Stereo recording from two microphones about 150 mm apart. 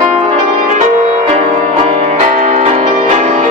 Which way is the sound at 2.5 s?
45° right (ahead or behind).